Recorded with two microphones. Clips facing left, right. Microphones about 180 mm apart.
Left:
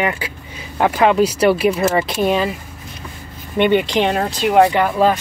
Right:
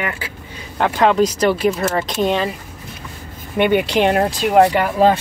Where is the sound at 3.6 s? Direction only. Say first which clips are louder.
Even; 10° right (ahead or behind).